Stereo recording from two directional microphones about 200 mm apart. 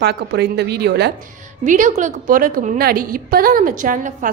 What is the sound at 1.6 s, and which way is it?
A woman's voice, 40° right (ahead or behind).